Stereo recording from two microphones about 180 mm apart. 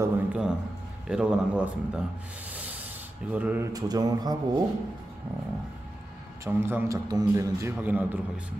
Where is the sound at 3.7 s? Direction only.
20° right (ahead or behind).